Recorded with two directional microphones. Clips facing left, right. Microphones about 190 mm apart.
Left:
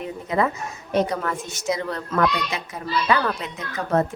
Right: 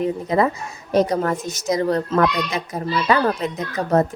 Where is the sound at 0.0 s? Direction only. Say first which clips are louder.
Right 5 dB; 35° right (ahead or behind).